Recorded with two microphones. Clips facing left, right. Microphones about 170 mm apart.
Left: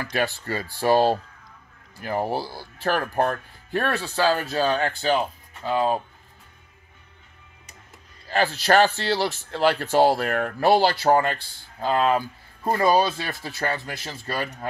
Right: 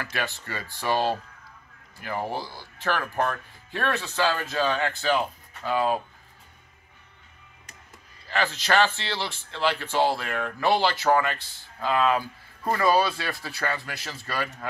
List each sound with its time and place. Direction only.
0.0 s speech: 35° left (ahead or behind)
2.3 s speech: 35° left (ahead or behind)
8.3 s speech: 35° left (ahead or behind)
12.6 s speech: 20° left (ahead or behind)